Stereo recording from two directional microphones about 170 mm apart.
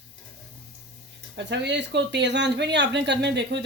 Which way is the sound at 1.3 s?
90° right.